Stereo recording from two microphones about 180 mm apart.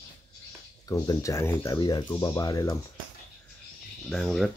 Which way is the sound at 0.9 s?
20° left (ahead or behind).